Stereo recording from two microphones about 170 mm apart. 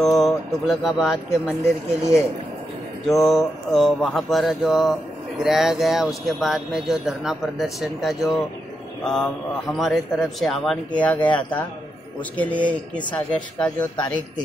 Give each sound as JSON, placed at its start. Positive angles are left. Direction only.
{"t": 0.0, "sound": "speech", "side_deg": 0}
{"t": 3.1, "sound": "speech", "side_deg": 0}
{"t": 13.9, "sound": "a man's voice", "side_deg": 25}